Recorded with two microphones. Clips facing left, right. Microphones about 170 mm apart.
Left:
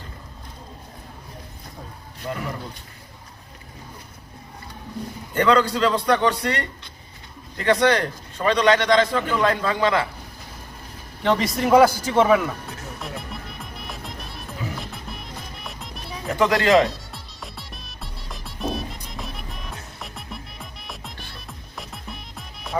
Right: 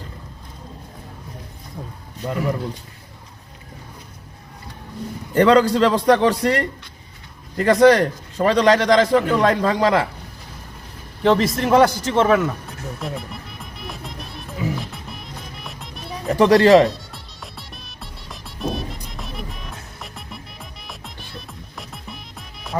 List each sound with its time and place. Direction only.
5.3 s a man's voice: 35° right (ahead or behind)
11.2 s speech: centre (ahead or behind)
13.0 s music: centre (ahead or behind)
16.3 s a man's voice: 35° right (ahead or behind)
16.9 s music: centre (ahead or behind)